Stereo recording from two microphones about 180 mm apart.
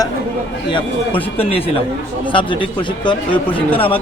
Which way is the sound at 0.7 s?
30° left (ahead or behind).